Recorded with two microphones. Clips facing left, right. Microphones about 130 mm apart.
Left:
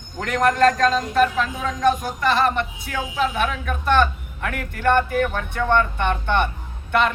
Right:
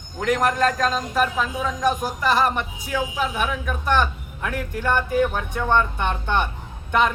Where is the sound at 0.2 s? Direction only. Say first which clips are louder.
Left 2 dB; 10° right (ahead or behind).